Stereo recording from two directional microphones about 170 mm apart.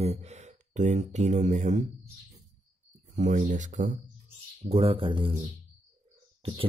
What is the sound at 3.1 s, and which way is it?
Speech, 45° right (ahead or behind).